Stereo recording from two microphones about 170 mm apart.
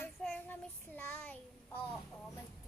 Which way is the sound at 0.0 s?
10° left (ahead or behind).